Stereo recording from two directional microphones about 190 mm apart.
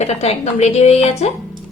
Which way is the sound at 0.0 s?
35° left (ahead or behind).